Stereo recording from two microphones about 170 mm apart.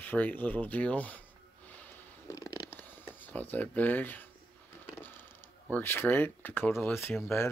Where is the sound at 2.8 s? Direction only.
10° left (ahead or behind).